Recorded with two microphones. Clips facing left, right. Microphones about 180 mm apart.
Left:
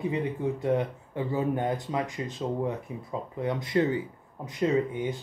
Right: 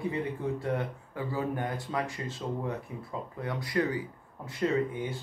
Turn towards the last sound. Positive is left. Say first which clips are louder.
# left 3 dB
turn(degrees=20)  # may be behind; listen again after turning